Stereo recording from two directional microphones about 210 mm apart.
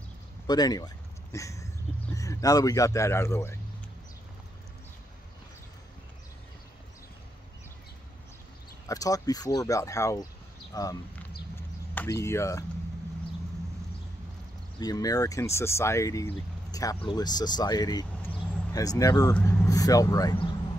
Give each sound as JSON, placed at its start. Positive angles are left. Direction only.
{"t": 0.5, "sound": "a sound", "side_deg": 20}
{"t": 2.1, "sound": "speech", "side_deg": 15}
{"t": 8.8, "sound": "speech", "side_deg": 15}
{"t": 14.8, "sound": "speech", "side_deg": 15}